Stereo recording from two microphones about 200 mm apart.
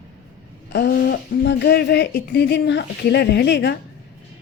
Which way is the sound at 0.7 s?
55° left (ahead or behind).